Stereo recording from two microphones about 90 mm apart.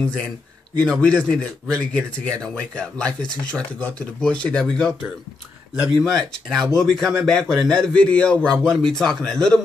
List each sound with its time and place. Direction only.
0.7 s speech: 10° left (ahead or behind)